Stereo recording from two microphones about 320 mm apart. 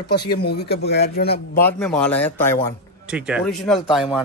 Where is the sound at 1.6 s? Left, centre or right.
Centre.